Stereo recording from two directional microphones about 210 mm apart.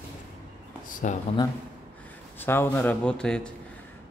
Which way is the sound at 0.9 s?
40° left (ahead or behind).